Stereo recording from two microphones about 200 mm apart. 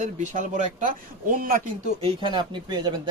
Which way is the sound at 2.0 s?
25° right (ahead or behind).